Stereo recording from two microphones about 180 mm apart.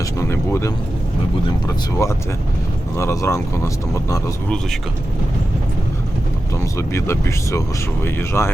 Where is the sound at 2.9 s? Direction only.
15° left (ahead or behind).